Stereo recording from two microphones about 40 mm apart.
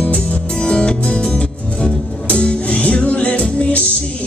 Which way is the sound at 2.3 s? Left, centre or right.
Left.